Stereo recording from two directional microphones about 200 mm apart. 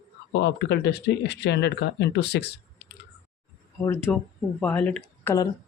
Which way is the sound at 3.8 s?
15° left (ahead or behind).